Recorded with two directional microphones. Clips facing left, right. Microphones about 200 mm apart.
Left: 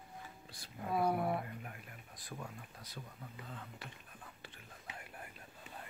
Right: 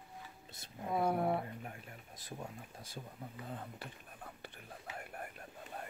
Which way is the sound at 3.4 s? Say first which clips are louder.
Right 6 dB; 40° right (ahead or behind).